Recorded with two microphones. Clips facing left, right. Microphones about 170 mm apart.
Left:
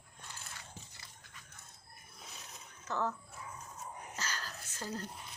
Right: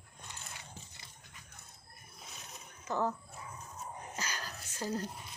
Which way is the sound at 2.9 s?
15° right (ahead or behind).